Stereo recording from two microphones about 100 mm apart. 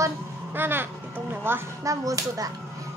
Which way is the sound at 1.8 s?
35° right (ahead or behind).